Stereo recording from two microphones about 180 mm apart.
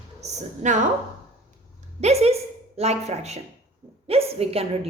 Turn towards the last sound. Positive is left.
turn(degrees=-35)  # may be behind; listen again after turning